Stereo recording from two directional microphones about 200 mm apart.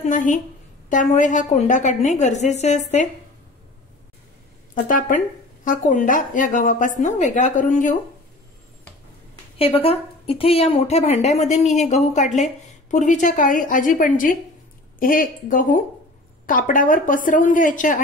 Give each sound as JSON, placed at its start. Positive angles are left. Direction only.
{"t": 0.0, "sound": "a woman's voice", "side_deg": 40}
{"t": 4.8, "sound": "a woman's voice", "side_deg": 40}
{"t": 9.6, "sound": "a woman's voice", "side_deg": 30}